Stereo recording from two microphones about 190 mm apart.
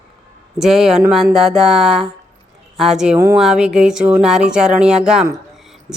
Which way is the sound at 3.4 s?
5° right (ahead or behind).